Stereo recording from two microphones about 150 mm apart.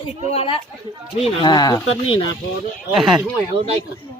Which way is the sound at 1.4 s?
30° left (ahead or behind).